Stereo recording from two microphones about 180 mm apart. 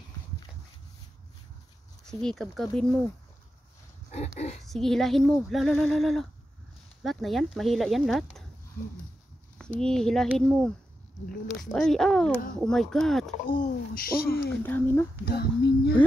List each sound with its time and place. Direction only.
2.0 s speech: 5° left (ahead or behind)
4.6 s speech: centre (ahead or behind)
9.6 s speech: 5° left (ahead or behind)
11.2 s speech: 50° left (ahead or behind)
11.7 s speech: centre (ahead or behind)
13.5 s a child's voice: 50° left (ahead or behind)
14.5 s speech: 10° left (ahead or behind)
15.2 s a child's voice: 65° left (ahead or behind)